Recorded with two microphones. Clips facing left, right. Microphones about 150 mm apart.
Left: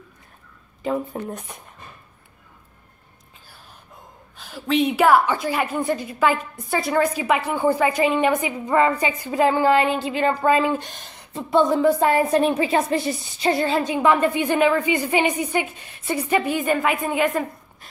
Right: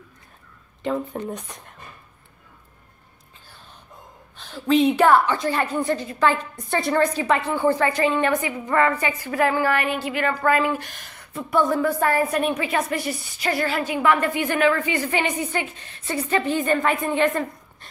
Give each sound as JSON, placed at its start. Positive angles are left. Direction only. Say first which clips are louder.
{"t": 0.8, "sound": "speech", "louder": "left 1 dB", "side_deg": 5}
{"t": 4.4, "sound": "a woman's voice", "louder": "right 2 dB", "side_deg": 5}